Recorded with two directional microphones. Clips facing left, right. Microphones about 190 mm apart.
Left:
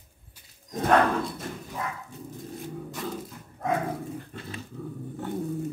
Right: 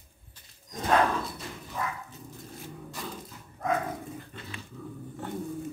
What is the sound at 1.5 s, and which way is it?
Dog, 50° left (ahead or behind).